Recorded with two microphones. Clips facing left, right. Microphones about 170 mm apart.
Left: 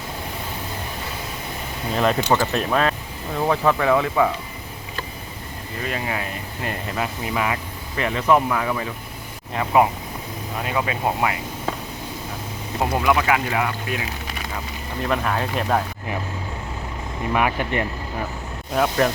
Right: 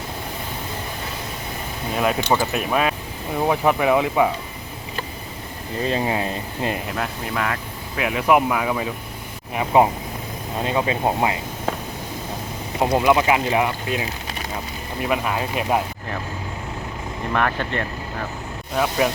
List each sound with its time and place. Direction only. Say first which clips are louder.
2.0 s speech: left 1 dB; 5° right (ahead or behind)
5.8 s speech: right 5 dB; 25° right (ahead or behind)
6.8 s speech: left 1 dB; 5° left (ahead or behind)
7.9 s speech: right 1 dB; 10° right (ahead or behind)
9.6 s speech: right 1 dB; 25° right (ahead or behind)
12.9 s speech: right 3 dB; 20° right (ahead or behind)
15.0 s speech: even; 10° right (ahead or behind)
17.3 s speech: left 1 dB; 10° left (ahead or behind)
18.8 s speech: left 1 dB; 5° right (ahead or behind)